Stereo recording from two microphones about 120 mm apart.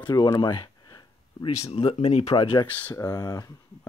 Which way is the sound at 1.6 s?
50° left (ahead or behind).